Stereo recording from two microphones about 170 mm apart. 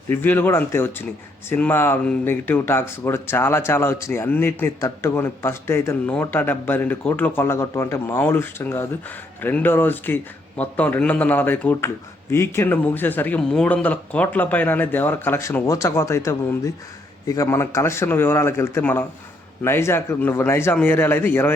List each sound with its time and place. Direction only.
0.1 s speech: 10° left (ahead or behind)